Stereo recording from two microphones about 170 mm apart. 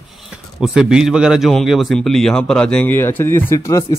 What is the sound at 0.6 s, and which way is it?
A man's voice, 5° right (ahead or behind).